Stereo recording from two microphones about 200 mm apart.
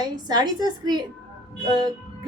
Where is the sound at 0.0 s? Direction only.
20° right (ahead or behind).